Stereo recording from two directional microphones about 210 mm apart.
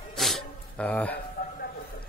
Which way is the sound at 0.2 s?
5° left (ahead or behind).